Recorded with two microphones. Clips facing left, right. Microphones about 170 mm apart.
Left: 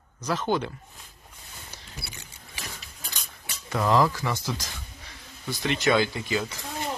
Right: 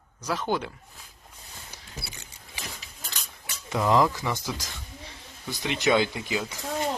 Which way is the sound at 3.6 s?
15° right (ahead or behind).